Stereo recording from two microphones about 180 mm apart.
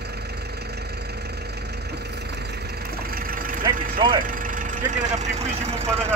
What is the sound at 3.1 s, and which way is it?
Vehicle, 50° right (ahead or behind).